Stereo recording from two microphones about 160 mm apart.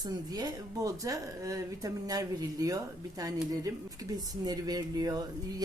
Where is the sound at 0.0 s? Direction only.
25° right (ahead or behind).